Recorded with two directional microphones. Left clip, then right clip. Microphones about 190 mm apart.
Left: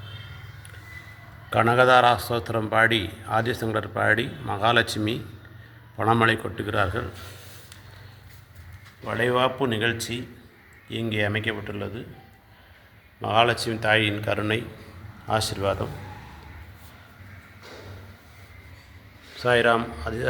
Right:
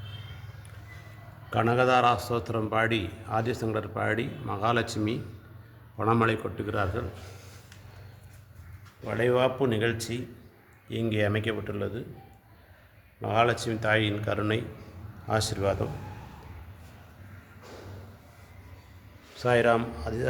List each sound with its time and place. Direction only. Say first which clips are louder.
1.5 s a man's voice: left 6 dB; 10° left (ahead or behind)
9.0 s speech: left 2 dB; 5° right (ahead or behind)
13.2 s speech: left 4 dB; centre (ahead or behind)
19.4 s speech: left 3 dB; 10° right (ahead or behind)